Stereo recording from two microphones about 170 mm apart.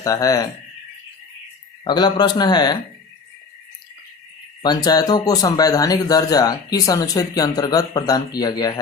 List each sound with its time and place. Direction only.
0.0 s speech: 20° left (ahead or behind)
1.8 s speech: 25° left (ahead or behind)
4.6 s speech: 25° left (ahead or behind)